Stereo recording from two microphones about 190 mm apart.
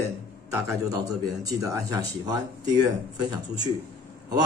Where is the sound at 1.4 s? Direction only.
20° right (ahead or behind).